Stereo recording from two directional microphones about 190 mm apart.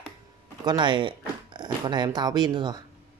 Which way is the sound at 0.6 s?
25° right (ahead or behind).